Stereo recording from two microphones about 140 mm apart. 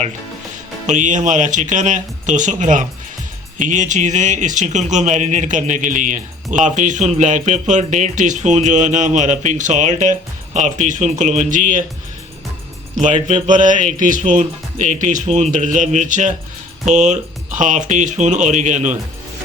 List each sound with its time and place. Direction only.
0.9 s speech: 60° right (ahead or behind)
13.1 s speech: 60° right (ahead or behind)